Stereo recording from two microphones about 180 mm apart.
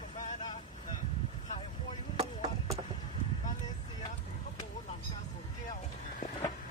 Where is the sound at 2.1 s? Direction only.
35° right (ahead or behind).